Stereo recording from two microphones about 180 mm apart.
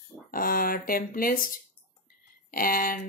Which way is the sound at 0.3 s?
50° left (ahead or behind).